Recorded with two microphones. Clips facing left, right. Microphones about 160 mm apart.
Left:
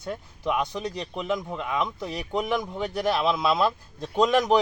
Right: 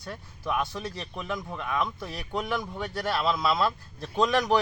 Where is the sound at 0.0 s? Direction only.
20° left (ahead or behind).